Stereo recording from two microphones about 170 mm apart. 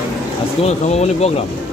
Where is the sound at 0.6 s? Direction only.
40° left (ahead or behind).